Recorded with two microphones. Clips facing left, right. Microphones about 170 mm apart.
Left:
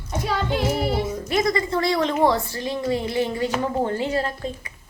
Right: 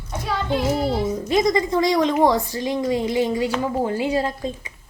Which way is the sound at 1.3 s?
20° right (ahead or behind).